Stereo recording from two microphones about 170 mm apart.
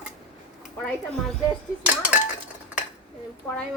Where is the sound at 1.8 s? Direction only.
10° right (ahead or behind).